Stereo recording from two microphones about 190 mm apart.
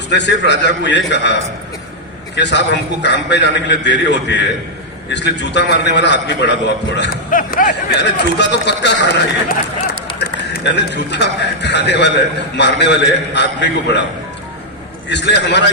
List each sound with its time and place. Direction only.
0.1 s a man's voice: 65° left (ahead or behind)
7.3 s speech: 45° left (ahead or behind)
8.0 s speech: 65° left (ahead or behind)
10.2 s speech: 60° left (ahead or behind)
15.1 s speech: 65° left (ahead or behind)